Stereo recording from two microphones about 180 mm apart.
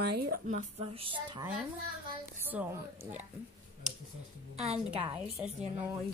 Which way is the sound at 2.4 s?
10° right (ahead or behind).